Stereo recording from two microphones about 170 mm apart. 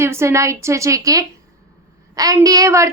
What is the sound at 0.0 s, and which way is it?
A woman's voice, 15° right (ahead or behind).